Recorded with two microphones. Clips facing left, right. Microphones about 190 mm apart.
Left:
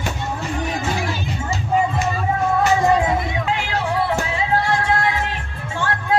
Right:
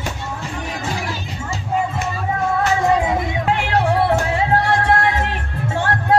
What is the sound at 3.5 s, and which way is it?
Music, 60° right (ahead or behind).